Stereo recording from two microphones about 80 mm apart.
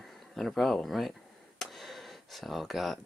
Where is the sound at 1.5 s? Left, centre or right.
Centre.